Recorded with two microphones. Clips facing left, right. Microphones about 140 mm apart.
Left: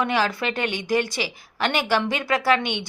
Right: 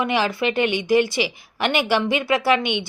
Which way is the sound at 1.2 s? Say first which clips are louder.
Right 3 dB; 10° right (ahead or behind).